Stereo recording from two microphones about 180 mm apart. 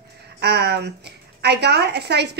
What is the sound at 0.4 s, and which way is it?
A woman's voice, 65° right (ahead or behind).